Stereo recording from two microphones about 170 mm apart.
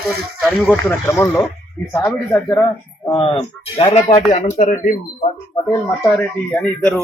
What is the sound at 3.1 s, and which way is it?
Speech, 30° left (ahead or behind).